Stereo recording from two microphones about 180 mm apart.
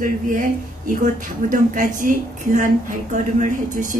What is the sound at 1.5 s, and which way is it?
A woman's voice, 45° right (ahead or behind).